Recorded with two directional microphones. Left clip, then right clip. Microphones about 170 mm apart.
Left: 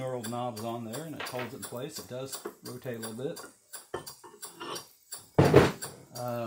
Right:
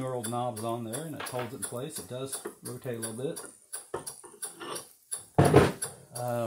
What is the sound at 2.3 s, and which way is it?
Speech, centre (ahead or behind).